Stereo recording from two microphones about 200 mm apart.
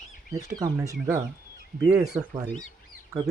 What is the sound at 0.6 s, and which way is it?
Speech, 15° right (ahead or behind).